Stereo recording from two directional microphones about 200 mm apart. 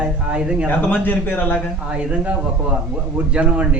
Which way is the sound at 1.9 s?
5° right (ahead or behind).